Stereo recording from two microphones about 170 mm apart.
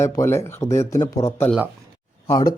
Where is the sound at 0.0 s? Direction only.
15° left (ahead or behind).